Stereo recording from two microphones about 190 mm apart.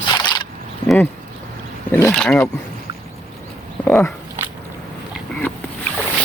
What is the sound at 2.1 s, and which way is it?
Speech, 5° left (ahead or behind).